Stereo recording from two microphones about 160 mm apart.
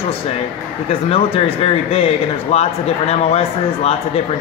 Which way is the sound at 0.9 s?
35° left (ahead or behind).